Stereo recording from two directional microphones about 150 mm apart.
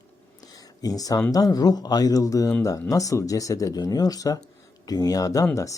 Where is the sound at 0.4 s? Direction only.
25° left (ahead or behind).